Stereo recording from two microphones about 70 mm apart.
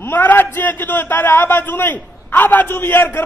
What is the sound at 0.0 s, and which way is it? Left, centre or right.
A man's voice, left.